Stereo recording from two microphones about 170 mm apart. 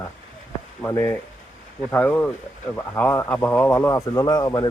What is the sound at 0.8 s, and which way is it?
Speech, 10° left (ahead or behind).